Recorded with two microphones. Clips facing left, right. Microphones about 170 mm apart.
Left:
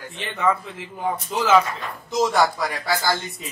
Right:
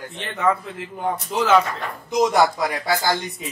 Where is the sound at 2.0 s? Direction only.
15° right (ahead or behind).